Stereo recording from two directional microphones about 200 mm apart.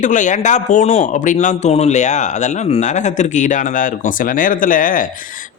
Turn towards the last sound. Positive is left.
turn(degrees=40)  # may be behind; listen again after turning